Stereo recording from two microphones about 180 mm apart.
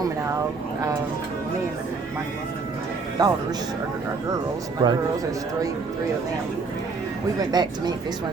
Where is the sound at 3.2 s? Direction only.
20° right (ahead or behind).